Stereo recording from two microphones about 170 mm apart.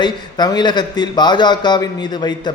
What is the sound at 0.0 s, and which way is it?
A man's voice, 25° left (ahead or behind).